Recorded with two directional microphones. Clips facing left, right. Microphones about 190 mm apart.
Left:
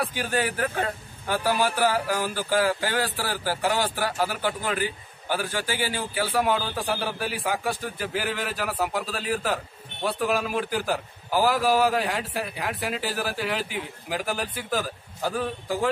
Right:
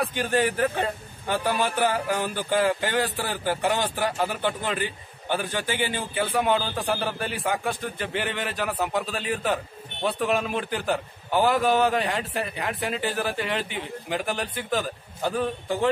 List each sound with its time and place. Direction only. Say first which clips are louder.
0.0 s a man's voice: right 3 dB; 5° left (ahead or behind)
1.9 s a man's voice: even; 20° right (ahead or behind)
4.2 s a man's voice: even; 5° left (ahead or behind)
5.6 s a man's voice: right 1 dB; 20° right (ahead or behind)
6.2 s a man's voice: right 1 dB; 5° left (ahead or behind)